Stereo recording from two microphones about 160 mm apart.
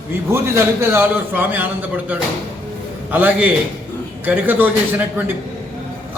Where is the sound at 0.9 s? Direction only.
10° right (ahead or behind).